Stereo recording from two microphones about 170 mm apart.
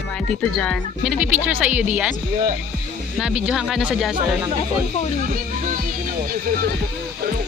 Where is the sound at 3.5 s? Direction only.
Centre (ahead or behind).